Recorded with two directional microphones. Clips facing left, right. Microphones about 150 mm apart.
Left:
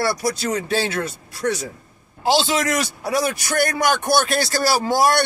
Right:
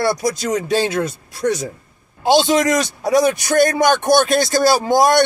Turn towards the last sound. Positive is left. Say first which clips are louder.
# right 4 dB
turn(degrees=-20)  # may be behind; listen again after turning